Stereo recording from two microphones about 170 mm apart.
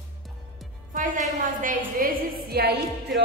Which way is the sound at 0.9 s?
50° right (ahead or behind).